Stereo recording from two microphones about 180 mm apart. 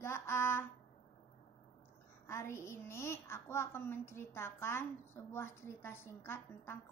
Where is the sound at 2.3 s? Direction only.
15° left (ahead or behind).